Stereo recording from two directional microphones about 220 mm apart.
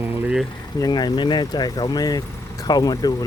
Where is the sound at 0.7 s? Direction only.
15° left (ahead or behind).